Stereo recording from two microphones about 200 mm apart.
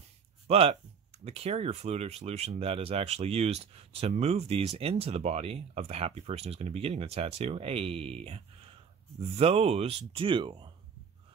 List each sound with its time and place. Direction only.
0.5 s speech: 30° right (ahead or behind)